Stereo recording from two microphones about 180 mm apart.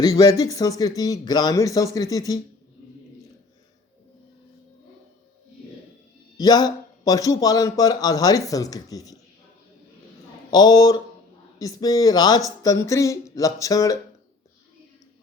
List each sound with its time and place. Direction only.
0.0 s speech: 20° left (ahead or behind)
6.3 s speech: 20° left (ahead or behind)
10.5 s speech: 20° left (ahead or behind)